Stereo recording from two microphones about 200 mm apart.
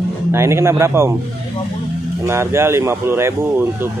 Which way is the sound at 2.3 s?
15° right (ahead or behind).